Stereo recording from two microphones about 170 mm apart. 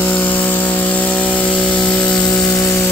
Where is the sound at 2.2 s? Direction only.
20° left (ahead or behind).